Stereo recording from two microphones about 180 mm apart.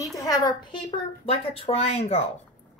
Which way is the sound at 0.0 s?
20° left (ahead or behind).